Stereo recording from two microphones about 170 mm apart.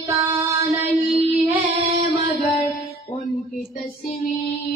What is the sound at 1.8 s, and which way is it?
Music, 35° right (ahead or behind).